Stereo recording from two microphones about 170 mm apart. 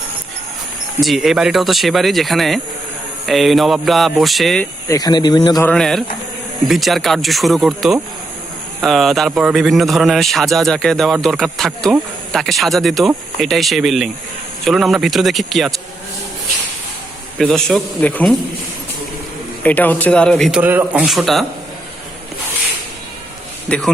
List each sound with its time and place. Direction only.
1.0 s a man's voice: centre (ahead or behind)
4.9 s speech: 25° left (ahead or behind)
5.6 s a man's voice: 5° left (ahead or behind)
17.3 s a man's voice: centre (ahead or behind)
19.6 s speech: 10° left (ahead or behind)
20.6 s a man's voice: 10° right (ahead or behind)
23.6 s speech: 5° left (ahead or behind)